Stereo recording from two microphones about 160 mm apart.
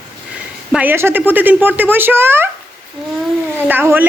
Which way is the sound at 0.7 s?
10° right (ahead or behind).